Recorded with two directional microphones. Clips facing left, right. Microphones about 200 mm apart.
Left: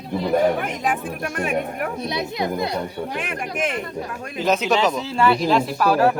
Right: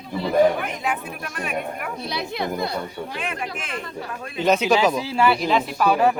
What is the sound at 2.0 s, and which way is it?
Speech, 20° left (ahead or behind).